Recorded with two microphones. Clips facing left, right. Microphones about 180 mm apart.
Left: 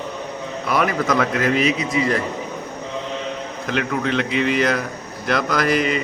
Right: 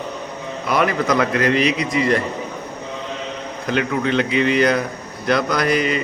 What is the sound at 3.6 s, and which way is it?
A man's voice, centre (ahead or behind).